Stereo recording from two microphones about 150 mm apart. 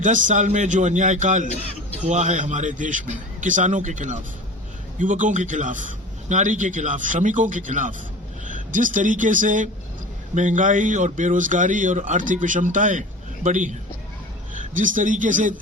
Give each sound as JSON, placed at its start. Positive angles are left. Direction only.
{"t": 0.0, "sound": "a man's voice", "side_deg": -55}